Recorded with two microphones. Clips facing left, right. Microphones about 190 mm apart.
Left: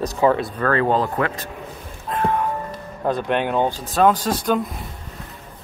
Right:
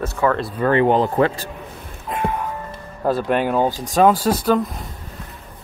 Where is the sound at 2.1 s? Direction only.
15° right (ahead or behind).